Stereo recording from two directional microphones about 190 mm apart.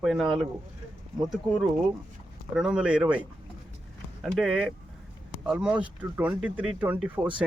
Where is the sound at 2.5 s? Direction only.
5° right (ahead or behind).